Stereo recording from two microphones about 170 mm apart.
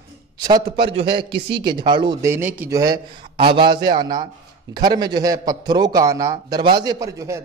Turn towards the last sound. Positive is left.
turn(degrees=-20)  # may be behind; listen again after turning